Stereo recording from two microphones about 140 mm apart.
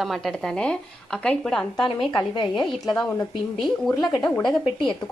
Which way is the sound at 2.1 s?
30° left (ahead or behind).